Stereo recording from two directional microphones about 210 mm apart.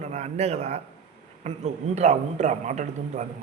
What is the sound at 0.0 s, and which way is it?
A man's voice, 35° right (ahead or behind).